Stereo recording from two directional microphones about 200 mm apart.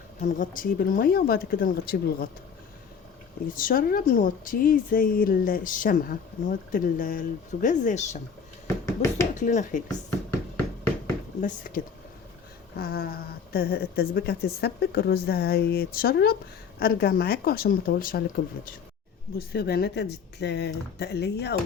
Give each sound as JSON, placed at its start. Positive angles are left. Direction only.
{"t": 0.2, "sound": "speech", "side_deg": 45}
{"t": 3.5, "sound": "speech", "side_deg": 45}
{"t": 8.6, "sound": "finger snapping", "side_deg": 15}
{"t": 9.3, "sound": "speech", "side_deg": 40}
{"t": 11.3, "sound": "speech", "side_deg": 45}
{"t": 19.5, "sound": "speech", "side_deg": 50}